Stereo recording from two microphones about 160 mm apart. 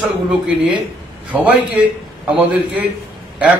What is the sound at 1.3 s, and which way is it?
Speech, 10° right (ahead or behind).